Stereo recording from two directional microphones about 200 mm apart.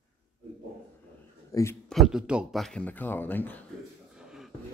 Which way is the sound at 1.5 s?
15° left (ahead or behind).